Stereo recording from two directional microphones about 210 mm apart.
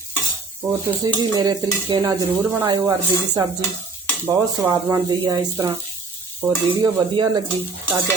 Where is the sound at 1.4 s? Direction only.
20° right (ahead or behind).